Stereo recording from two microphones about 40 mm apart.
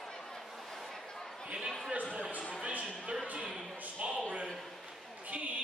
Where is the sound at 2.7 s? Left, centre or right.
Right.